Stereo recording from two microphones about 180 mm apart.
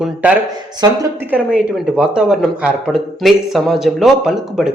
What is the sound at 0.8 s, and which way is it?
Speech, 25° right (ahead or behind).